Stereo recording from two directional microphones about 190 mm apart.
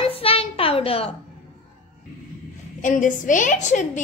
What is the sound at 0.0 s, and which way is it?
Music, 30° left (ahead or behind).